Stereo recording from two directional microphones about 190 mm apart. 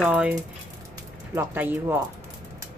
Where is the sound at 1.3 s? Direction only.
10° right (ahead or behind).